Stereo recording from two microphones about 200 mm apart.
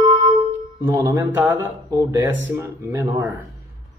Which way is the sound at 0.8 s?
10° right (ahead or behind).